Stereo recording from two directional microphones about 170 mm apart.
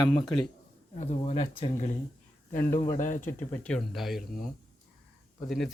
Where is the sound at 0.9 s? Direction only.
40° left (ahead or behind).